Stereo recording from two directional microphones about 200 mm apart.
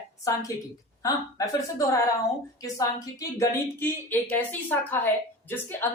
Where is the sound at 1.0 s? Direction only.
15° left (ahead or behind).